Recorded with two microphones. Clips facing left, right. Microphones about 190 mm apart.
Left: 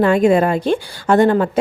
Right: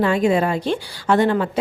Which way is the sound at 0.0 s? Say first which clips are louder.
Left 5 dB; 55° left (ahead or behind).